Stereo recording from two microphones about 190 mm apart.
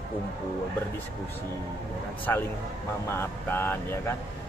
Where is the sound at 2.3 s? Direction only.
10° left (ahead or behind).